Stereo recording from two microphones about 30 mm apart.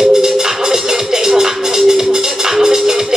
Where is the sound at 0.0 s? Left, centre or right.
Centre.